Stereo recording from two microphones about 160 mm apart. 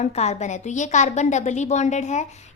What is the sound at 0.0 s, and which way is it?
A woman's voice, 45° left (ahead or behind).